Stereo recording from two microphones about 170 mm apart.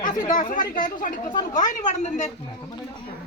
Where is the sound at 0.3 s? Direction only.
50° left (ahead or behind).